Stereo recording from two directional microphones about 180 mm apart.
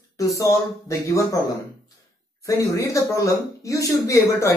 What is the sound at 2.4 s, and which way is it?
Speech, 15° left (ahead or behind).